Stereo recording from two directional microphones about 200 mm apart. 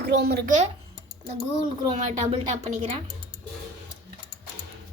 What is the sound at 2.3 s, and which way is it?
Speech, 30° right (ahead or behind).